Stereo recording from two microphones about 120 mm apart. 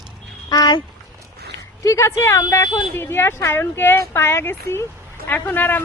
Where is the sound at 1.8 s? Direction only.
25° left (ahead or behind).